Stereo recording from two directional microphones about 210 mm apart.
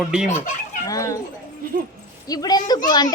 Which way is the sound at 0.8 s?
15° left (ahead or behind).